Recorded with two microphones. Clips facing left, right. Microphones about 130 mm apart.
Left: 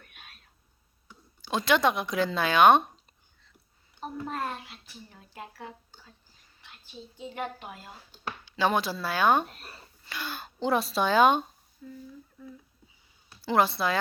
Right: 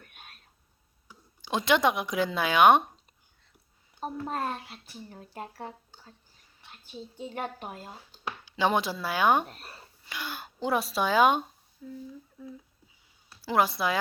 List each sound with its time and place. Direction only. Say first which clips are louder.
0.0 s whispering: right 1 dB; 45° right (ahead or behind)
1.0 s speech: even; 15° right (ahead or behind)
4.3 s a woman's voice: right 1 dB; 35° right (ahead or behind)
8.4 s speech: even; 20° right (ahead or behind)
9.5 s speech: right 2 dB; 35° right (ahead or behind)
10.0 s speech: left 1 dB; 15° right (ahead or behind)